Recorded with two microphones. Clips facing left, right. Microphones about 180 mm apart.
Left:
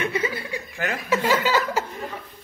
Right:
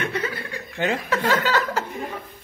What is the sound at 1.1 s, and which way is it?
Speech, 10° left (ahead or behind).